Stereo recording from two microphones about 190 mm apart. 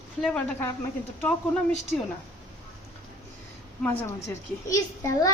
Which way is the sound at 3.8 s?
10° left (ahead or behind).